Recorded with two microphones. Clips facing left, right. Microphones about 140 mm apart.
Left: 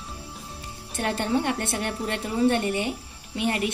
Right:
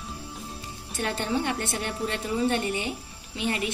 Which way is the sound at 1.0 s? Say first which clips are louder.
Left 3 dB; 55° left (ahead or behind).